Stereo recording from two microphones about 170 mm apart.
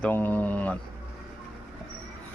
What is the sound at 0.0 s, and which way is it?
Speech, 10° left (ahead or behind).